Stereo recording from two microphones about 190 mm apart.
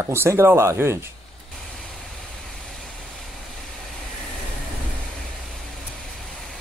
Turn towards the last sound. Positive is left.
turn(degrees=0)  # may be behind; listen again after turning